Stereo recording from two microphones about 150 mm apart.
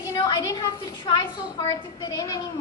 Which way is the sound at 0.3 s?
25° left (ahead or behind).